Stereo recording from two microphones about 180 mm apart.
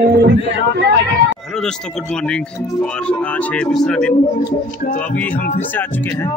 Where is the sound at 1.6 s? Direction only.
5° left (ahead or behind).